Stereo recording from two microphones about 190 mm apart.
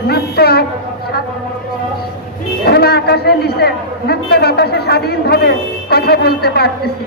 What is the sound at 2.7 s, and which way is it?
A man's voice, 55° left (ahead or behind).